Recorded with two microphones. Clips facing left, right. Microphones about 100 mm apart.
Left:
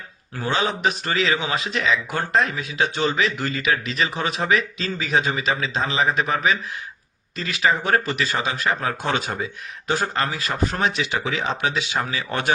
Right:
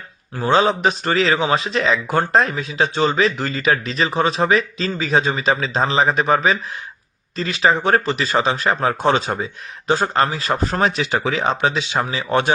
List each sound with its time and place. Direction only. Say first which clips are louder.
0.3 s speech: right 7 dB; 30° right (ahead or behind)